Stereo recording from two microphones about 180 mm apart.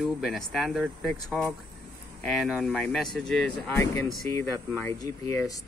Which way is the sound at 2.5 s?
Centre (ahead or behind).